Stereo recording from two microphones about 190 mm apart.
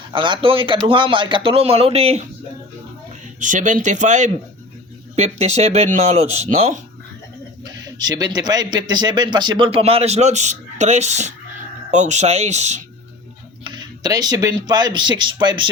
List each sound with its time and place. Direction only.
0.1 s a man's voice: 25° right (ahead or behind)
3.4 s speech: 40° right (ahead or behind)
7.6 s a man's voice: 20° right (ahead or behind); by 12.8 s 35° right (ahead or behind)
13.7 s speech: 20° right (ahead or behind)